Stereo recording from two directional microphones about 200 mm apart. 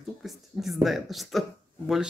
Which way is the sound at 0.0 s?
Centre (ahead or behind).